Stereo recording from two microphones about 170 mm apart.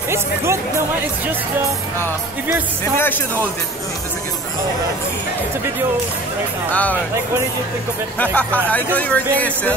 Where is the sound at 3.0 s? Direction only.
10° left (ahead or behind).